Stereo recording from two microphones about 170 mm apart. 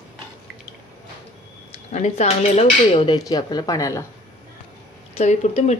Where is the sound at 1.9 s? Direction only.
40° left (ahead or behind); by 4.1 s 20° left (ahead or behind).